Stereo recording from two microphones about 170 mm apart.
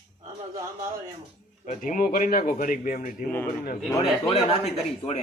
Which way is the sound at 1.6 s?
50° left (ahead or behind).